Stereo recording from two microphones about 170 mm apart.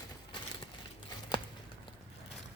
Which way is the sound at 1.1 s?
25° left (ahead or behind).